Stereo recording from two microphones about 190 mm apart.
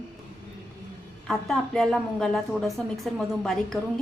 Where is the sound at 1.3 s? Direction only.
5° left (ahead or behind).